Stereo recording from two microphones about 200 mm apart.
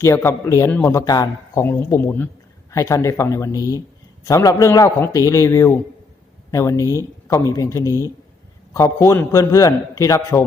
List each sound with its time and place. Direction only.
0.0 s a man's voice: 15° left (ahead or behind)